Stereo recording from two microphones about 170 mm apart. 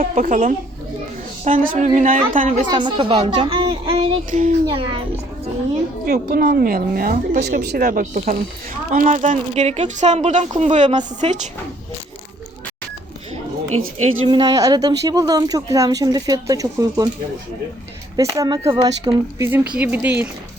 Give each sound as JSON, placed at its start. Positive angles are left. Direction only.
{"t": 0.0, "sound": "a woman's voice", "side_deg": -50}
{"t": 2.6, "sound": "speech", "side_deg": -25}
{"t": 4.3, "sound": "a woman's voice", "side_deg": -45}
{"t": 4.6, "sound": "speech", "side_deg": -30}
{"t": 6.1, "sound": "a woman's voice", "side_deg": -65}
{"t": 14.3, "sound": "speech", "side_deg": -25}
{"t": 18.2, "sound": "speech", "side_deg": -20}
{"t": 19.4, "sound": "speech", "side_deg": -15}